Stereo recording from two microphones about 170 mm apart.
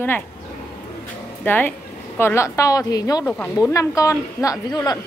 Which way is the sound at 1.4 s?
10° left (ahead or behind).